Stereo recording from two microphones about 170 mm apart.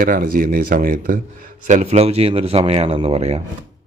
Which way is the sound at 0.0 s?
55° right (ahead or behind).